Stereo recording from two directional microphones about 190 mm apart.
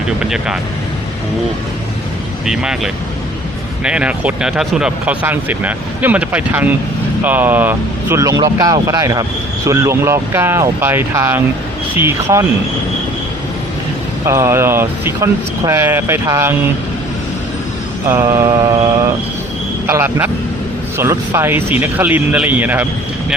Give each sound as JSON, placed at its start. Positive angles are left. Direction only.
{"t": 0.2, "sound": "speech", "side_deg": -5}
{"t": 2.5, "sound": "speech", "side_deg": -5}
{"t": 14.3, "sound": "speech", "side_deg": -15}
{"t": 18.1, "sound": "mantra", "side_deg": -15}
{"t": 19.9, "sound": "speech", "side_deg": -15}